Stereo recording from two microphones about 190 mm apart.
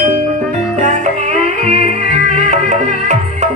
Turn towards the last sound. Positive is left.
turn(degrees=-40)  # may be behind; listen again after turning